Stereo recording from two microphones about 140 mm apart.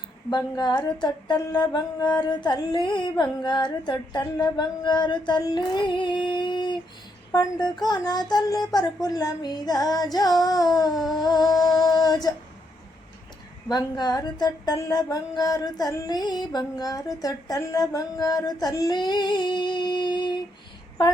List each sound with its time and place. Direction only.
0.3 s a sound: 30° left (ahead or behind)
4.5 s female singing: 30° left (ahead or behind)
13.7 s female singing: 30° left (ahead or behind)